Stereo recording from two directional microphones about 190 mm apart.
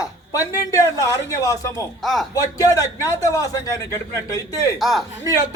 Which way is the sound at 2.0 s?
Centre (ahead or behind).